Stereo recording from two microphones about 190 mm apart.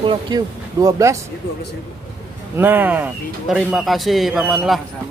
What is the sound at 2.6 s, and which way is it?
Speech, 10° right (ahead or behind).